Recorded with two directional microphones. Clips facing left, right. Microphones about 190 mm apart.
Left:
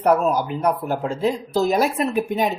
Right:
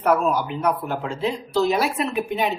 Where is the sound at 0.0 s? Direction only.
40° left (ahead or behind).